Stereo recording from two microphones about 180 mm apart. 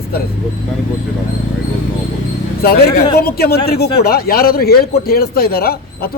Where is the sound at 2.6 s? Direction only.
60° left (ahead or behind).